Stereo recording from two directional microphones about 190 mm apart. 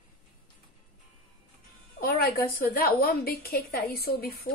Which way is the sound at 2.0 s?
55° left (ahead or behind).